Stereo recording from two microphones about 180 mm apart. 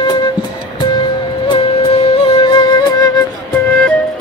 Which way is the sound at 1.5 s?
30° left (ahead or behind).